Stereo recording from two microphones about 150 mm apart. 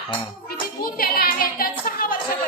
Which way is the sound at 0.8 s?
80° left.